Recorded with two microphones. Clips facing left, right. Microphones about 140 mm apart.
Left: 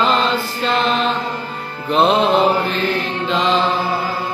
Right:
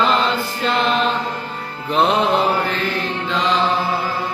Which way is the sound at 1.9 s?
25° left (ahead or behind).